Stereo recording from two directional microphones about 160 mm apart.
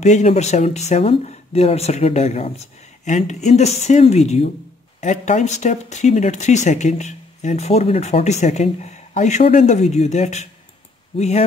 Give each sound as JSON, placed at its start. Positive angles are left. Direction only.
{"t": 0.0, "sound": "speech", "side_deg": 45}